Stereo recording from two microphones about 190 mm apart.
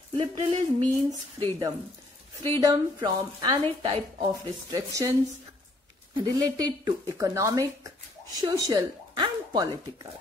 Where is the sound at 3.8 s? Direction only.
30° right (ahead or behind).